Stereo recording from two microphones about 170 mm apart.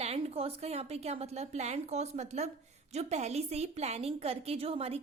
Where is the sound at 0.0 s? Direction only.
35° right (ahead or behind).